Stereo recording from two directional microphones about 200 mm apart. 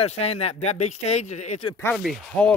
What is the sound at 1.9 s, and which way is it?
Speech, centre (ahead or behind).